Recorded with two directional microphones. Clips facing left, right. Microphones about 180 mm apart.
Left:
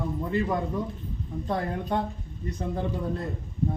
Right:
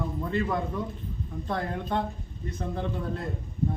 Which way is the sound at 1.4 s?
15° left (ahead or behind).